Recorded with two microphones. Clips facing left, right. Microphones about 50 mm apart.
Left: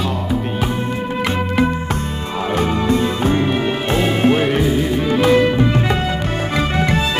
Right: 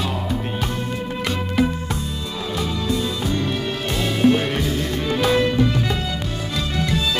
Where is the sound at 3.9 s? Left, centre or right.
Left.